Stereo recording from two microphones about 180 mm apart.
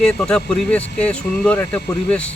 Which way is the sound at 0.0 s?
5° left (ahead or behind).